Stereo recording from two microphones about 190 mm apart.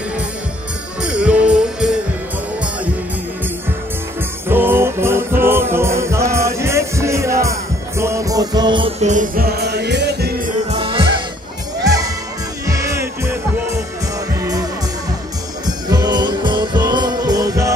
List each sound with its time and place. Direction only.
1.0 s music: 5° right (ahead or behind)
4.5 s music: 10° right (ahead or behind)
9.0 s music: 45° right (ahead or behind); by 10.3 s 60° right (ahead or behind)
10.7 s music: 30° right (ahead or behind)
12.6 s music: 15° right (ahead or behind)